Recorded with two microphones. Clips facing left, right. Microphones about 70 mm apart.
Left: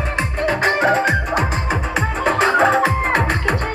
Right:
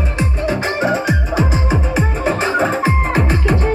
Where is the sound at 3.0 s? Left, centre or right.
Left.